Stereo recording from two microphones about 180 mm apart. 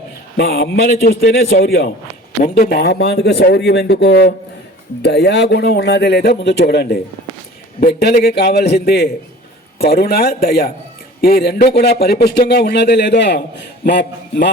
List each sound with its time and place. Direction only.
0.3 s speech: 65° left (ahead or behind); by 1.5 s 90° left
2.6 s speech: 60° left (ahead or behind)